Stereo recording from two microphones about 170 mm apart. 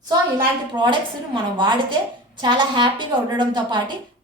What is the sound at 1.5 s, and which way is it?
A child's voice, 25° right (ahead or behind).